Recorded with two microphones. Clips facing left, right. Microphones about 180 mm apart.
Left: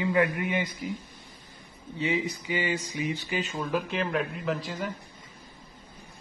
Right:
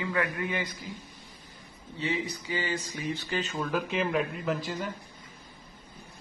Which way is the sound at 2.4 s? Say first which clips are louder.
Left 3 dB; 15° left (ahead or behind).